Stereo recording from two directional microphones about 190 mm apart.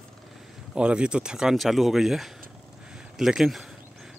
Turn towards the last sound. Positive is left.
turn(degrees=-5)  # may be behind; listen again after turning